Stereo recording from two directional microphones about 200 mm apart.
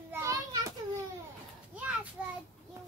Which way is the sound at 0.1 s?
15° right (ahead or behind).